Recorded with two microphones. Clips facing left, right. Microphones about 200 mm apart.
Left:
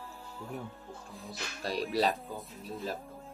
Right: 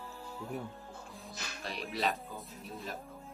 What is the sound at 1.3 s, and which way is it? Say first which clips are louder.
Speech: left 7 dB; 35° left (ahead or behind).